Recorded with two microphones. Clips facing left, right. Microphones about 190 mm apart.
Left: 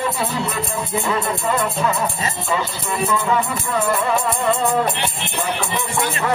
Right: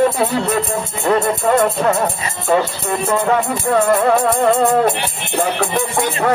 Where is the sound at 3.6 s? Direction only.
60° right (ahead or behind).